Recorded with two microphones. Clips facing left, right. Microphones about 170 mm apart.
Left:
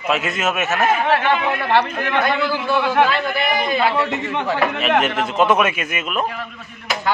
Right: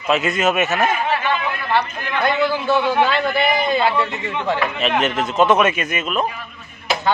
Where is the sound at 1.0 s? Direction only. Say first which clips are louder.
Left 3 dB; 70° left (ahead or behind).